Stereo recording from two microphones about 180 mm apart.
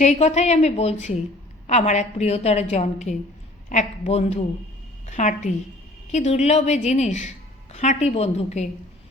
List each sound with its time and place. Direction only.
0.0 s a woman's voice: 40° left (ahead or behind)